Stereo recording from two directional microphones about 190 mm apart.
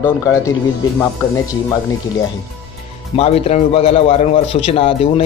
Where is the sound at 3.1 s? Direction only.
30° left (ahead or behind).